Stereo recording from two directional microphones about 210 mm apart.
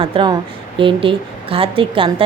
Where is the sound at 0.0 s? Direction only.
25° right (ahead or behind).